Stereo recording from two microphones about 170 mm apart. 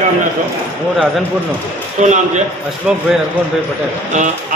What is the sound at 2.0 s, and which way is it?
Speech, 45° right (ahead or behind).